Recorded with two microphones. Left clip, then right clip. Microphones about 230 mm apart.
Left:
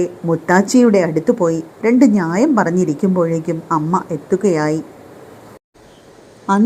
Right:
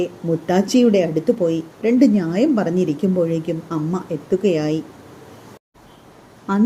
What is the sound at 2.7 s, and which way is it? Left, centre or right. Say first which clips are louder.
Speech: left 3 dB; left.